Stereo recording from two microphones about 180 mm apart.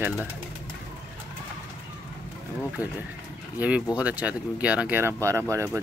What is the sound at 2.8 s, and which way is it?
Speech, 10° right (ahead or behind).